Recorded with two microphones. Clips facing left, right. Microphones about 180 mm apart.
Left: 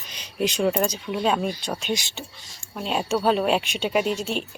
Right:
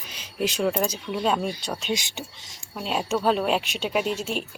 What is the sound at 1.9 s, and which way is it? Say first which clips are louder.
Speech: right 1 dB; 20° right (ahead or behind).